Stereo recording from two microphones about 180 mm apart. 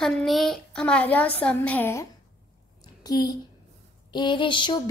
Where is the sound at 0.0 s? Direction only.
Centre (ahead or behind).